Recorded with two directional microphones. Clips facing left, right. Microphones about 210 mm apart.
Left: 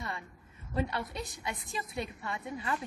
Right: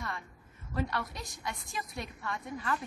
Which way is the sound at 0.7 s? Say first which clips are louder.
Left 1 dB; 25° left (ahead or behind).